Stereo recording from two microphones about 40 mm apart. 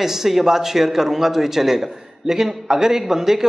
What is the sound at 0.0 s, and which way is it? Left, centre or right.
A man's voice, centre.